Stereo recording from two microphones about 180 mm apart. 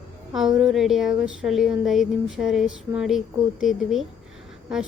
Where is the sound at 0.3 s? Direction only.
Centre (ahead or behind).